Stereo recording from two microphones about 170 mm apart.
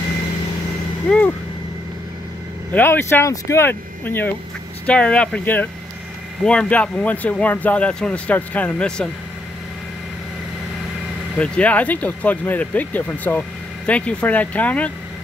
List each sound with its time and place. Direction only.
1.0 s vehicle: 10° left (ahead or behind)
2.7 s speech: 15° left (ahead or behind)
11.3 s speech: 5° left (ahead or behind)